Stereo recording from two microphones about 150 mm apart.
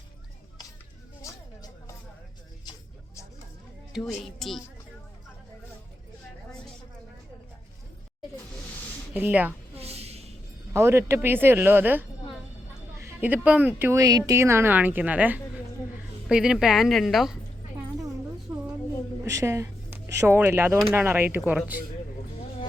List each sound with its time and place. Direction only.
1.2 s music: 20° left (ahead or behind)
3.9 s speech: centre (ahead or behind)
9.1 s speech: 10° right (ahead or behind)
9.7 s a sound: 45° right (ahead or behind)
10.7 s speech: 15° right (ahead or behind)
13.1 s speech: 10° right (ahead or behind)
19.2 s a sound: 20° right (ahead or behind)
20.9 s speech: 15° right (ahead or behind)